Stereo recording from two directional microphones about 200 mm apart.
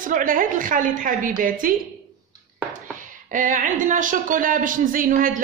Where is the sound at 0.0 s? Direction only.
40° right (ahead or behind).